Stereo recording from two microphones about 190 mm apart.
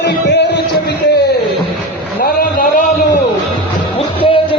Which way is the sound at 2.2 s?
50° left (ahead or behind).